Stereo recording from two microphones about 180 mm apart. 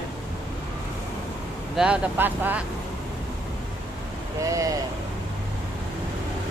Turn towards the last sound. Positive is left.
turn(degrees=-20)  # may be behind; listen again after turning